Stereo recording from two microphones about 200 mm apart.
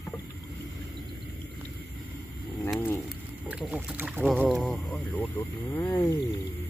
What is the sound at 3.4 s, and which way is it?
Speech, 5° right (ahead or behind).